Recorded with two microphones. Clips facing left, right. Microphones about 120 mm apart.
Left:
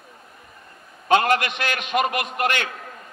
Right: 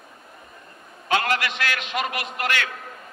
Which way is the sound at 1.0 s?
25° left (ahead or behind).